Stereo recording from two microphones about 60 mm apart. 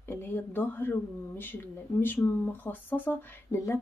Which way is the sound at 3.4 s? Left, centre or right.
Left.